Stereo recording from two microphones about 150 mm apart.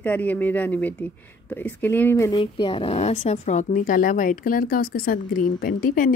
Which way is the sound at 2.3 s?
35° left (ahead or behind).